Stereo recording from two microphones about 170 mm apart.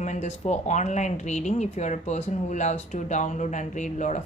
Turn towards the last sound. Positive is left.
turn(degrees=45)  # may be behind; listen again after turning